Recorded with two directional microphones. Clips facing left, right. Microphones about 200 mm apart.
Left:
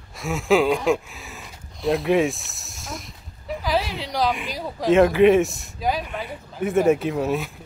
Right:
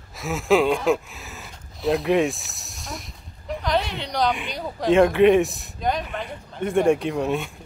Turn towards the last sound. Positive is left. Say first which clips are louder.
# left 1 dB
turn(degrees=0)  # may be behind; listen again after turning